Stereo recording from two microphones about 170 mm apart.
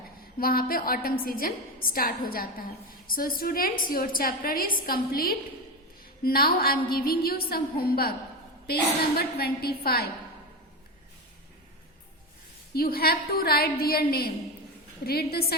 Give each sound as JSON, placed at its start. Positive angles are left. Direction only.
{"t": 0.3, "sound": "a woman's voice", "side_deg": 60}
{"t": 12.7, "sound": "a woman's voice", "side_deg": 65}